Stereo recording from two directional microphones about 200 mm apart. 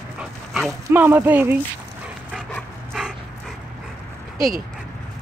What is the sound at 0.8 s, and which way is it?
Speech, 10° right (ahead or behind).